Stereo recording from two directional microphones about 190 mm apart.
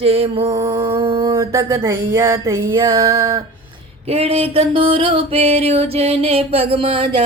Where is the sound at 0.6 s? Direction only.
15° right (ahead or behind).